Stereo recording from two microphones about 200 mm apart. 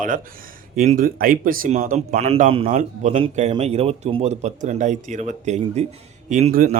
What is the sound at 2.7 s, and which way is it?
Speech, 40° right (ahead or behind).